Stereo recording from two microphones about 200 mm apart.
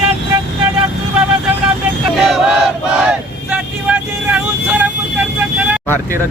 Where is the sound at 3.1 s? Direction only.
5° right (ahead or behind).